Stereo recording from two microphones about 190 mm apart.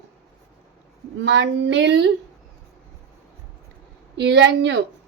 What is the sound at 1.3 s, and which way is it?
Speech, 70° right (ahead or behind).